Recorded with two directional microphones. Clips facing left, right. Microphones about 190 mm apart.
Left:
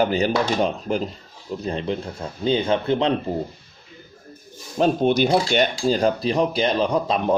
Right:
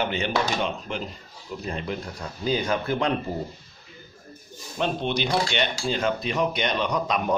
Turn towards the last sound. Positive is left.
turn(degrees=30)  # may be behind; listen again after turning